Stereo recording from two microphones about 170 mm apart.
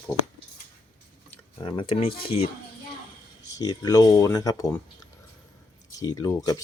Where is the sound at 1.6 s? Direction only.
25° left (ahead or behind).